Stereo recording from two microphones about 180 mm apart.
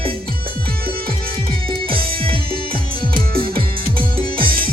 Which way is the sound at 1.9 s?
55° right (ahead or behind).